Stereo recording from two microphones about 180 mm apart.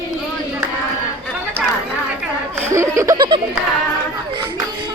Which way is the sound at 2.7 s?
15° right (ahead or behind).